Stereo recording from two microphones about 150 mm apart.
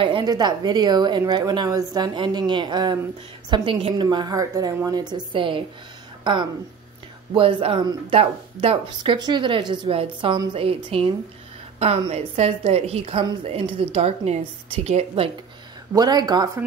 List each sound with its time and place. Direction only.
0.0 s speech: 30° right (ahead or behind)
7.3 s a woman's voice: 35° right (ahead or behind)
15.9 s speech: 25° right (ahead or behind)